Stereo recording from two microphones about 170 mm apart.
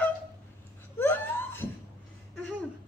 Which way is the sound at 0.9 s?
10° left (ahead or behind).